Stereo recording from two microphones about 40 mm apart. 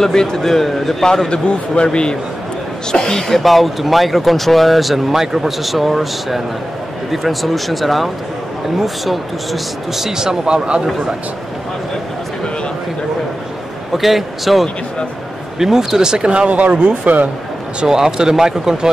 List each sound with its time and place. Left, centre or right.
0.0 s a man's voice: centre
1.3 s a man's voice: left; by 10.8 s right
13.9 s speech: centre
16.3 s speech: right
17.7 s speech: centre